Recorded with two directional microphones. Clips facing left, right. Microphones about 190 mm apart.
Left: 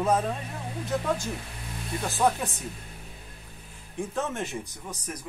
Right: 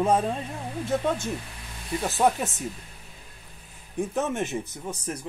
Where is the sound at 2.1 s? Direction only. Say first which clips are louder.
Right 2 dB; 20° right (ahead or behind).